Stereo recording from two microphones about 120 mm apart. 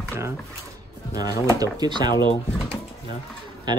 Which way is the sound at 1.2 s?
30° right (ahead or behind).